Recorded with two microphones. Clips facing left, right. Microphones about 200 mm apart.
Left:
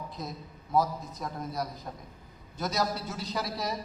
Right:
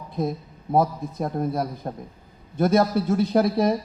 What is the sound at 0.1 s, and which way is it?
A man's voice, 55° right (ahead or behind).